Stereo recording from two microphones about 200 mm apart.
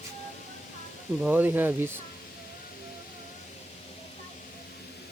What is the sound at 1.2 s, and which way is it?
Speech, 10° right (ahead or behind).